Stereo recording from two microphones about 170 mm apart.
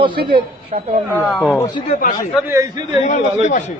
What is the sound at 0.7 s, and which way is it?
Speech, 40° right (ahead or behind).